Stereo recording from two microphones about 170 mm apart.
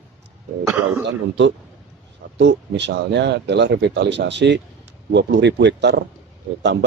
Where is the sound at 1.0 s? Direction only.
90° right.